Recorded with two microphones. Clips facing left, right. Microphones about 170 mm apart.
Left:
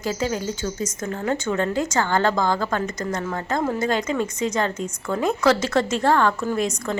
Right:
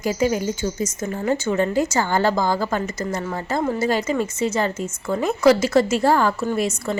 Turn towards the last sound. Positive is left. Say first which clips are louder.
# right 1 dB
turn(degrees=-5)  # may be behind; listen again after turning